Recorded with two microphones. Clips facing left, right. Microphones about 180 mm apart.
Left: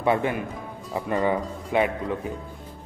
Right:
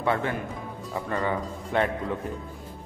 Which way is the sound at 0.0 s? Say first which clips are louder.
Left 3 dB; 15° left (ahead or behind).